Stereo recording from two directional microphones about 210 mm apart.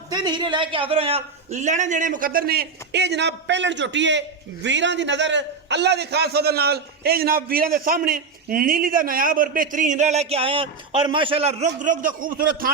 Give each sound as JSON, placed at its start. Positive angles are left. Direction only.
{"t": 0.1, "sound": "a man's voice", "side_deg": -20}
{"t": 11.8, "sound": "a man's voice", "side_deg": -40}